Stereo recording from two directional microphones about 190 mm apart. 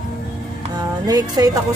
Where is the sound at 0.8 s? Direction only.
20° right (ahead or behind).